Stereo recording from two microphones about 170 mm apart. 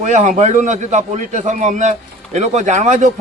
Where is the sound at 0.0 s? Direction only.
45° right (ahead or behind).